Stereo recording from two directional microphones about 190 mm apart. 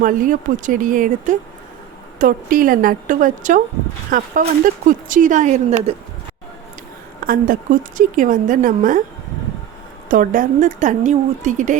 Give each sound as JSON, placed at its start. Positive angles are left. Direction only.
{"t": 0.0, "sound": "speech", "side_deg": -45}
{"t": 7.3, "sound": "speech", "side_deg": -45}
{"t": 10.1, "sound": "a woman's voice", "side_deg": -45}